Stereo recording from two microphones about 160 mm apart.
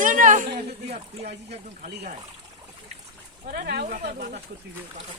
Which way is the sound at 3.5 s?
75° right (ahead or behind).